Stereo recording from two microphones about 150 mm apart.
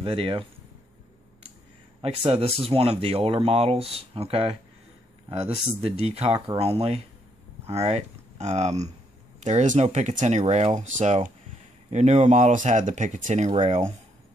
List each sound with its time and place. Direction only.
0.0 s speech: 35° right (ahead or behind)
2.0 s speech: 40° right (ahead or behind)